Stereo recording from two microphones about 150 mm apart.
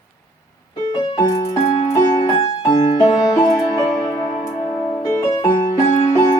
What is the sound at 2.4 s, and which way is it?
Music, 40° left (ahead or behind).